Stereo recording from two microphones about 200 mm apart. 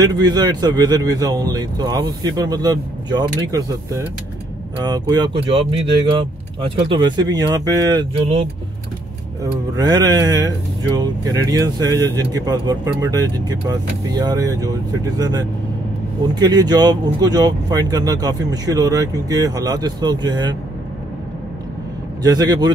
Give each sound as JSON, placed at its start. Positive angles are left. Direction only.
{"t": 0.0, "sound": "speech", "side_deg": -20}
{"t": 6.9, "sound": "speech", "side_deg": -20}
{"t": 22.2, "sound": "speech", "side_deg": -20}